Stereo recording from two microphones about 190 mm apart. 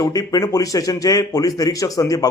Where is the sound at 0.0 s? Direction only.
20° left (ahead or behind).